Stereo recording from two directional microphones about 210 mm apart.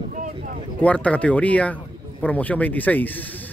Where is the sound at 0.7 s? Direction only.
5° left (ahead or behind).